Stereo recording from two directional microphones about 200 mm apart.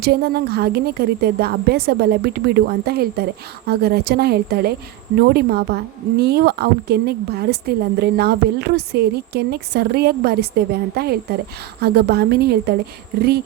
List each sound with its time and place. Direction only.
0.0 s a woman's voice: 55° right (ahead or behind)